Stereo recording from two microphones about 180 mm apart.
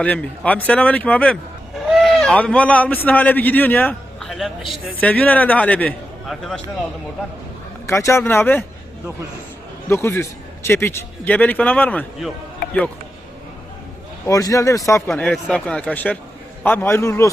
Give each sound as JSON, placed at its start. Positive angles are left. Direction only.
{"t": 0.0, "sound": "a man's voice", "side_deg": 10}
{"t": 7.9, "sound": "a man's voice", "side_deg": 15}
{"t": 9.9, "sound": "a man's voice", "side_deg": 15}
{"t": 14.3, "sound": "a man's voice", "side_deg": 20}
{"t": 15.0, "sound": "a man's voice", "side_deg": 5}